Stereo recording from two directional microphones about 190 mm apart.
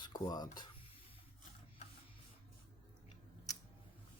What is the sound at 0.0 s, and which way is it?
Speech, 20° left (ahead or behind).